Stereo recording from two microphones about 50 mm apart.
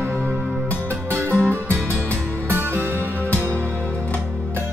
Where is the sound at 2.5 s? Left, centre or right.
Right.